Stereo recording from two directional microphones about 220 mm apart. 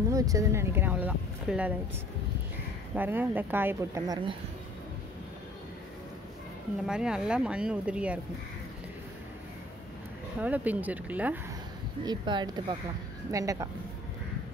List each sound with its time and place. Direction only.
0.1 s speech: 15° right (ahead or behind)
3.0 s speech: 10° right (ahead or behind)
6.9 s speech: 5° right (ahead or behind)
10.4 s speech: 5° right (ahead or behind)
12.0 s speech: 20° right (ahead or behind)